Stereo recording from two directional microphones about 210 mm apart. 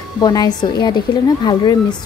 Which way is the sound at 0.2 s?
20° left (ahead or behind).